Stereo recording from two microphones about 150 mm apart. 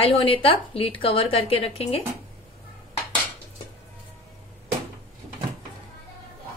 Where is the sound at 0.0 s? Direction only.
35° left (ahead or behind).